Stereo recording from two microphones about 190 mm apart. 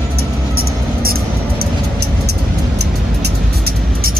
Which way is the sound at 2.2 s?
60° right (ahead or behind).